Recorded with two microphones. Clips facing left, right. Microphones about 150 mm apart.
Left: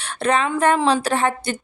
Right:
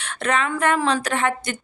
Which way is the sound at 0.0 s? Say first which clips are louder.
Left 3 dB; 35° left (ahead or behind).